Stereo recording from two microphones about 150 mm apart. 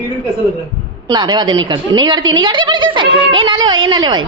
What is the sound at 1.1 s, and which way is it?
A woman's voice, 30° right (ahead or behind).